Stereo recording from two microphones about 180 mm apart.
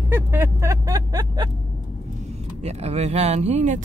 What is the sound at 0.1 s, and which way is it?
Vehicle, 10° right (ahead or behind).